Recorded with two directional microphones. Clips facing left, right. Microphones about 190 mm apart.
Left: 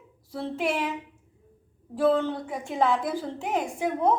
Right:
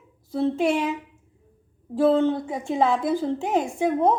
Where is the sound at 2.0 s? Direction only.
25° right (ahead or behind).